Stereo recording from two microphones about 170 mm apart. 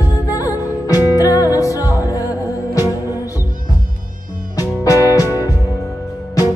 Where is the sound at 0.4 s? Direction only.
20° left (ahead or behind).